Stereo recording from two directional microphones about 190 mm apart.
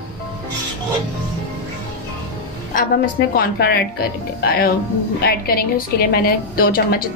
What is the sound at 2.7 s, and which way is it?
A woman's voice, 50° left (ahead or behind).